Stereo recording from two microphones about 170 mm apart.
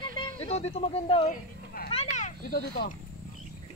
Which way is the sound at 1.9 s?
40° left (ahead or behind).